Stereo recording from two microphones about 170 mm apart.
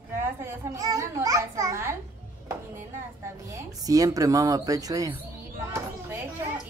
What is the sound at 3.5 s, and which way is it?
Speech, 20° right (ahead or behind).